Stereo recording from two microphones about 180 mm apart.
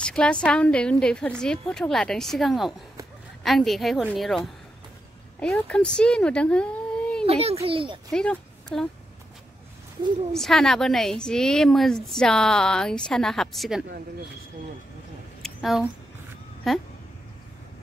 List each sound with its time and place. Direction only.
0.0 s a sound: 5° left (ahead or behind)
0.5 s a woman's voice: 5° left (ahead or behind)
7.2 s a child's voice: 35° right (ahead or behind)
8.1 s speech: 5° left (ahead or behind)
10.3 s a woman's voice: centre (ahead or behind)
15.4 s a sound: centre (ahead or behind)
16.6 s a woman's voice: centre (ahead or behind)